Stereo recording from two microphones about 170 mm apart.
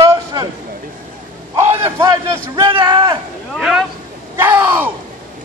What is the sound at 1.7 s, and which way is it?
A man's voice, 20° right (ahead or behind).